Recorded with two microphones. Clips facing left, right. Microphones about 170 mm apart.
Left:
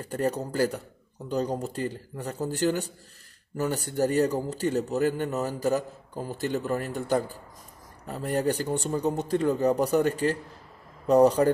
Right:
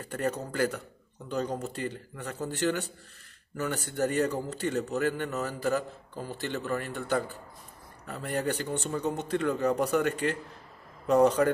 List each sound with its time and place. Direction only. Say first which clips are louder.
0.0 s a man's voice: left 3 dB; 35° left (ahead or behind)